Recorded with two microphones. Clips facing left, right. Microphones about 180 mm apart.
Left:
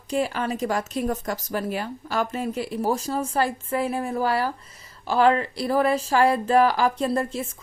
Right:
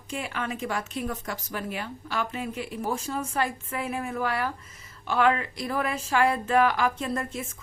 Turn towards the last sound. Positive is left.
turn(degrees=35)  # may be behind; listen again after turning